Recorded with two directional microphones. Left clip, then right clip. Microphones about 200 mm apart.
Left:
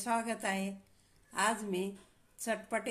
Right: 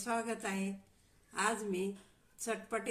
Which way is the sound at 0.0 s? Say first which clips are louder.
Left 3 dB; 25° left (ahead or behind).